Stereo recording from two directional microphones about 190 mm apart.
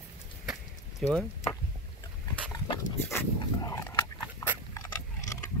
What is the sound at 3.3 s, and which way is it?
Dog, 15° left (ahead or behind).